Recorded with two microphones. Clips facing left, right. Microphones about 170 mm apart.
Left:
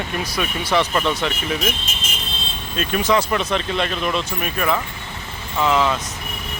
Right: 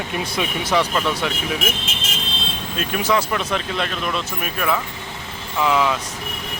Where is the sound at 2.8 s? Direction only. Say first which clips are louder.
Left 2 dB; 5° right (ahead or behind).